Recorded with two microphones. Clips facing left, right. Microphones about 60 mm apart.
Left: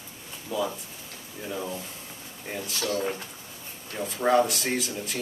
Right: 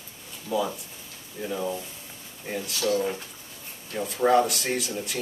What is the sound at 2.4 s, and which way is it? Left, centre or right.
Speech, centre.